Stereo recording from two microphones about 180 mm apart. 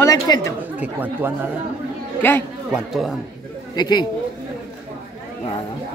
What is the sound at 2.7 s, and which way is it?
Speech, centre (ahead or behind).